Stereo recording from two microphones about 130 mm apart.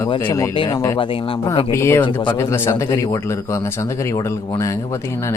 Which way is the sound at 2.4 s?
20° left (ahead or behind).